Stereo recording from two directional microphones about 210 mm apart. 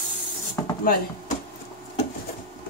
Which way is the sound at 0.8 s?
45° left (ahead or behind).